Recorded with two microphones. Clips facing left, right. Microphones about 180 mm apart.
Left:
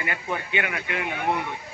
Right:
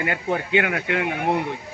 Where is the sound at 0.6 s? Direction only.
80° right.